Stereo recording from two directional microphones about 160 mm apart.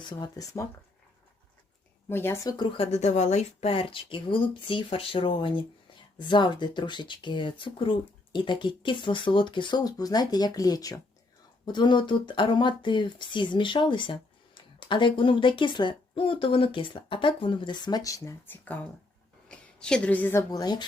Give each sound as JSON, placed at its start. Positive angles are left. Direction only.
{"t": 0.0, "sound": "speech", "side_deg": 30}
{"t": 2.0, "sound": "a woman's voice", "side_deg": 15}
{"t": 20.5, "sound": "speech", "side_deg": 25}